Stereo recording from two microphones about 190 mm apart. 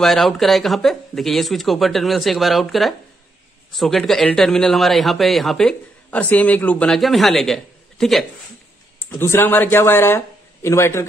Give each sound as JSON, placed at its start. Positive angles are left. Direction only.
{"t": 0.0, "sound": "speech", "side_deg": 0}
{"t": 9.1, "sound": "speech", "side_deg": 15}